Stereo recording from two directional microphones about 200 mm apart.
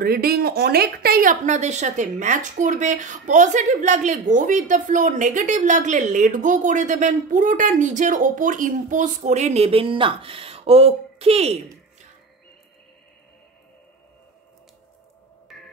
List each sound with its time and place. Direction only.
0.0 s a woman's voice: 50° right (ahead or behind); by 11.6 s 30° right (ahead or behind)